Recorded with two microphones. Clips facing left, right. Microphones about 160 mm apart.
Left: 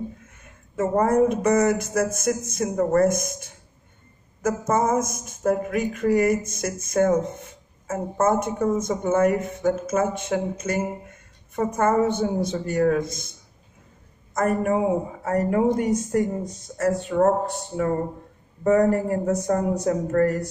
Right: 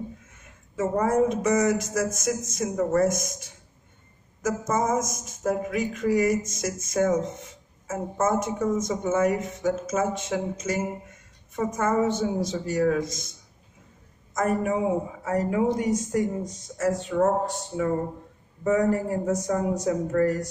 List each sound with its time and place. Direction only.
0.4 s speech: 55° left (ahead or behind)